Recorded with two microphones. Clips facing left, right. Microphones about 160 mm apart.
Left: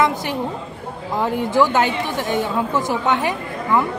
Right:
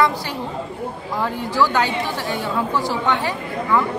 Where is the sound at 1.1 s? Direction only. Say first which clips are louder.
Left 5 dB; 20° left (ahead or behind).